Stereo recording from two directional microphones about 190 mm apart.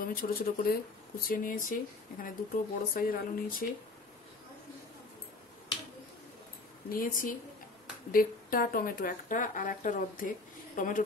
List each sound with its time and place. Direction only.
0.0 s speech: 50° left (ahead or behind)
6.9 s speech: 50° left (ahead or behind)